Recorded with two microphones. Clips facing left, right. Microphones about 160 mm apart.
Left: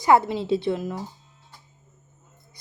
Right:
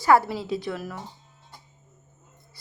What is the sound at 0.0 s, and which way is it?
A woman's voice, 20° left (ahead or behind).